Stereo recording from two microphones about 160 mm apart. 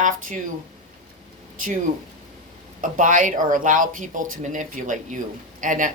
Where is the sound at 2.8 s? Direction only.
55° right (ahead or behind).